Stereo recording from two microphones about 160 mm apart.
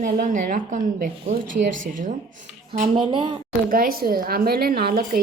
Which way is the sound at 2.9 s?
30° right (ahead or behind).